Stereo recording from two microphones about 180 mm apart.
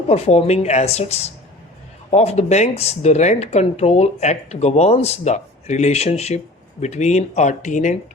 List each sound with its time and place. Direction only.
0.1 s speech: 35° left (ahead or behind)